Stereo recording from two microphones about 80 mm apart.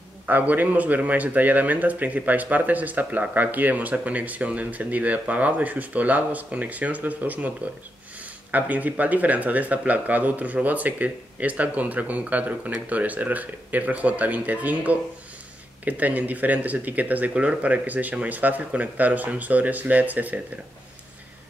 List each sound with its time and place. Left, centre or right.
0.3 s a man's voice: right